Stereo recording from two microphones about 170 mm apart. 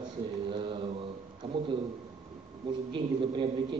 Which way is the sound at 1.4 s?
30° right (ahead or behind).